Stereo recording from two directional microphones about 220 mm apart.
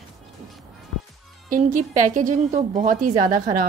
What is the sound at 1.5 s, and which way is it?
A woman's voice, 35° right (ahead or behind).